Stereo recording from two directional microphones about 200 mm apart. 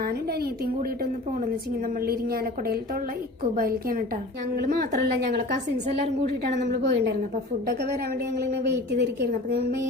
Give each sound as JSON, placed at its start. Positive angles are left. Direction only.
{"t": 0.0, "sound": "a woman's voice", "side_deg": -50}
{"t": 8.4, "sound": "a woman's voice", "side_deg": -55}